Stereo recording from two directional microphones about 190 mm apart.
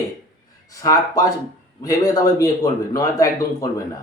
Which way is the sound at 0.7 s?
20° left (ahead or behind).